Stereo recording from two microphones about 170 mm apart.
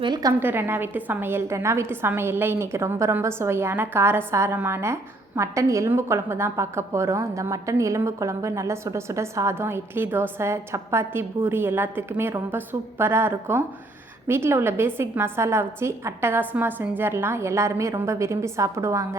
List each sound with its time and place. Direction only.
0.0 s a woman's voice: 25° right (ahead or behind)